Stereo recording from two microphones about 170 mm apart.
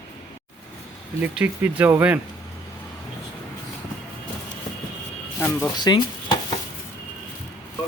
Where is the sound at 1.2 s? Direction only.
10° right (ahead or behind).